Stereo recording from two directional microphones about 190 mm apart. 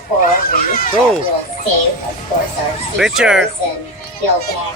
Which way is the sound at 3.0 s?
5° right (ahead or behind).